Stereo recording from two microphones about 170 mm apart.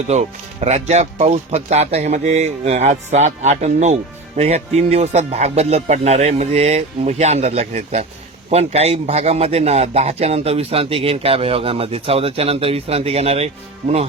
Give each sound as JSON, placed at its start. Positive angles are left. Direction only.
{"t": 0.1, "sound": "a man's voice", "side_deg": -40}